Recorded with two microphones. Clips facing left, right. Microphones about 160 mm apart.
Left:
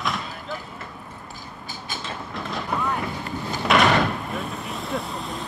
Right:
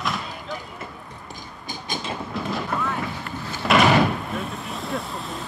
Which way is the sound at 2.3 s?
Centre (ahead or behind).